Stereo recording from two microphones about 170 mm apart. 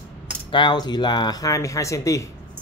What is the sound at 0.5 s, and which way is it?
Speech, 25° left (ahead or behind).